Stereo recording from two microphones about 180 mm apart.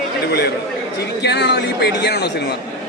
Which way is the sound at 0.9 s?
65° left (ahead or behind).